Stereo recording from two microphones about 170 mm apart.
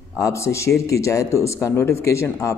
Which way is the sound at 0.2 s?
15° left (ahead or behind).